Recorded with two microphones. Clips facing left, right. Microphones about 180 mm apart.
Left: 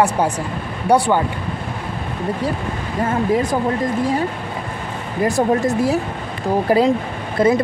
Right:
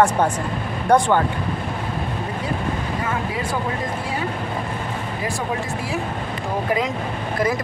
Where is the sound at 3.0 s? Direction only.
40° left (ahead or behind).